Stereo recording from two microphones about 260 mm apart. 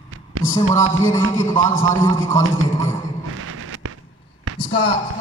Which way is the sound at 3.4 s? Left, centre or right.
Right.